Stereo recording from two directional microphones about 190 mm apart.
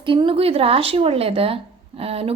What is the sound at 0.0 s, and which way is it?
A woman's voice, 25° right (ahead or behind).